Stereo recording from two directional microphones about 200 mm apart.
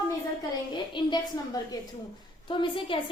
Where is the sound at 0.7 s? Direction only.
20° left (ahead or behind).